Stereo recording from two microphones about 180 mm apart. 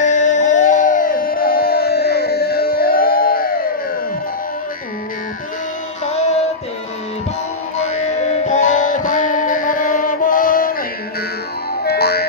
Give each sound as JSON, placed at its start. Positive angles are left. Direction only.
{"t": 0.0, "sound": "music", "side_deg": 45}
{"t": 6.0, "sound": "music", "side_deg": 40}
{"t": 7.7, "sound": "music", "side_deg": 40}
{"t": 11.8, "sound": "music", "side_deg": 60}